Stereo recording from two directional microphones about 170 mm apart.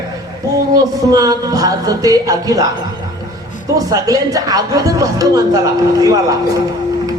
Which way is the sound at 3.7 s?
20° right (ahead or behind).